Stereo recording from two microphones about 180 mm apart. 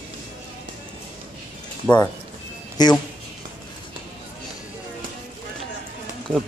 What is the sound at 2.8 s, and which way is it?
Speech, 20° left (ahead or behind).